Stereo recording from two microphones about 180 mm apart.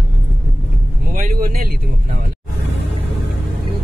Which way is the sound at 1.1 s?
50° right (ahead or behind).